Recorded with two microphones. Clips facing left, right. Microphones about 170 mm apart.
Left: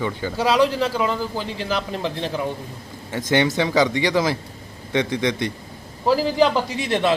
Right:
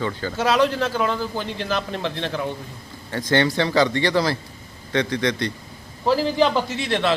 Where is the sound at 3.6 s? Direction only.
15° left (ahead or behind).